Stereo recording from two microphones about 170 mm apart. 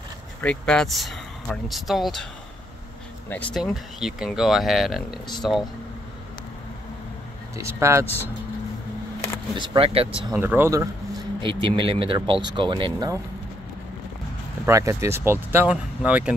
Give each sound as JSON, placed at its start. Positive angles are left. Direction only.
{"t": 0.4, "sound": "speech", "side_deg": 5}
{"t": 3.3, "sound": "speech", "side_deg": 10}
{"t": 7.5, "sound": "speech", "side_deg": -15}
{"t": 9.6, "sound": "speech", "side_deg": -35}
{"t": 10.3, "sound": "speech", "side_deg": -10}
{"t": 11.4, "sound": "speech", "side_deg": -30}
{"t": 14.7, "sound": "speech", "side_deg": -20}